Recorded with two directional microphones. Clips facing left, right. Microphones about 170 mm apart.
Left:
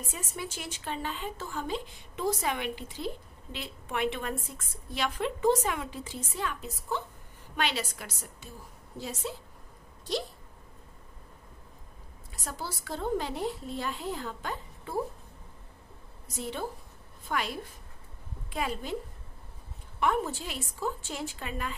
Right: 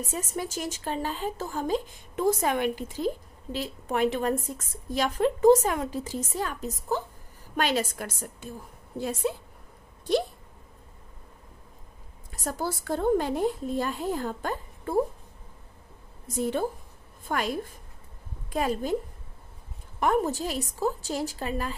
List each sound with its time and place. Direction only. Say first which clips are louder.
0.0 s a woman's voice: right 6 dB; 40° right (ahead or behind); by 9.4 s 55° right (ahead or behind)
12.3 s a woman's voice: right 8 dB; 50° right (ahead or behind)
16.3 s a woman's voice: right 8 dB; 50° right (ahead or behind)
20.0 s a woman's voice: right 4 dB; 40° right (ahead or behind)